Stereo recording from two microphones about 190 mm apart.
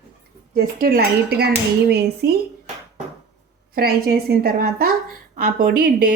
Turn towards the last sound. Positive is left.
turn(degrees=-50)  # may be behind; listen again after turning